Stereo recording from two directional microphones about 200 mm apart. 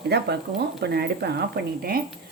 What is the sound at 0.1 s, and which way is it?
Speech, 55° right (ahead or behind).